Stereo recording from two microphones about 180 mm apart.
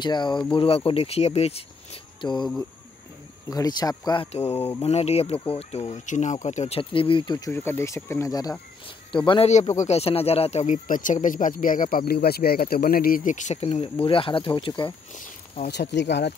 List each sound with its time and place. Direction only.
0.0 s speech: 25° left (ahead or behind)
3.4 s speech: 20° left (ahead or behind)
4.6 s speech: 35° left (ahead or behind)
15.1 s a sound: 40° left (ahead or behind)
15.7 s speech: 70° left (ahead or behind)